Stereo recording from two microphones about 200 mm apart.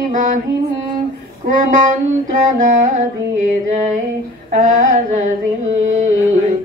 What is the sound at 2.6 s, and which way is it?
Carnatic music, 40° right (ahead or behind).